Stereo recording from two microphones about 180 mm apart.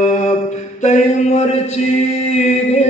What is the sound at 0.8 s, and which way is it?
Chant, 40° left (ahead or behind).